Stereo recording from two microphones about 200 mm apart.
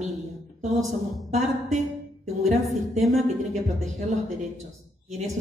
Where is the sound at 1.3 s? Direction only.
35° right (ahead or behind).